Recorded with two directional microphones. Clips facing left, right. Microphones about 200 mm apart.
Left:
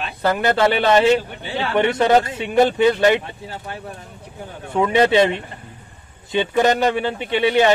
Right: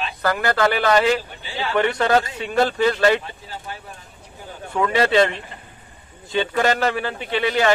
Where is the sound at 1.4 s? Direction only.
60° left (ahead or behind).